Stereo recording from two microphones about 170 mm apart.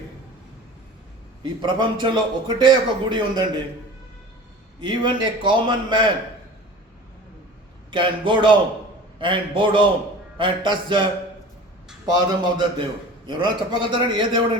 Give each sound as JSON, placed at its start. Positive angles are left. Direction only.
{"t": 1.6, "sound": "a man's voice", "side_deg": -25}
{"t": 4.8, "sound": "a man's voice", "side_deg": -25}
{"t": 7.9, "sound": "a man's voice", "side_deg": -30}